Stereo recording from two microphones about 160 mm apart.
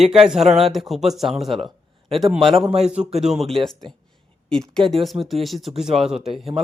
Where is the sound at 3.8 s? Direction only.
30° right (ahead or behind).